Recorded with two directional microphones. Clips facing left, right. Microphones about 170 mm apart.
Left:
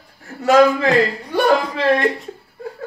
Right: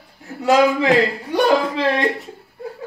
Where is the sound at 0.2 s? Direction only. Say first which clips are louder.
Left 2 dB; 15° right (ahead or behind).